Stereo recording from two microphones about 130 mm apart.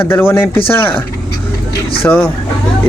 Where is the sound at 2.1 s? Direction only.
15° left (ahead or behind).